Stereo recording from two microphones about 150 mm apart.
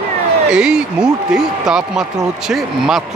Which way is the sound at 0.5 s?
5° right (ahead or behind).